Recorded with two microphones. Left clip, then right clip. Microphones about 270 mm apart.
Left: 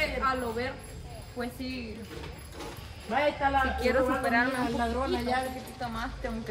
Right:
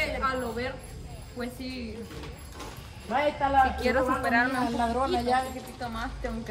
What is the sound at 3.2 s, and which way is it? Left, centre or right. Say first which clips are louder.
A woman's voice: right 3 dB; centre.